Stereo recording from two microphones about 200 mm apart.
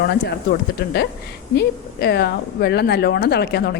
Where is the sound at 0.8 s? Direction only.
50° left (ahead or behind).